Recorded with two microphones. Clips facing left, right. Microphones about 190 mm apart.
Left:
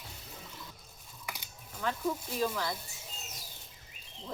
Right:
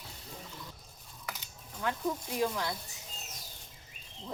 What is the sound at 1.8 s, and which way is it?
Speech, 15° right (ahead or behind).